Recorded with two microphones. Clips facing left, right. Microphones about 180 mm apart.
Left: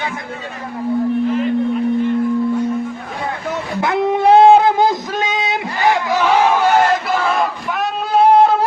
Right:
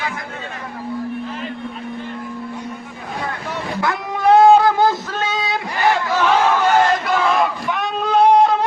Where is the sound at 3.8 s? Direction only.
25° left (ahead or behind); by 8.5 s 5° left (ahead or behind).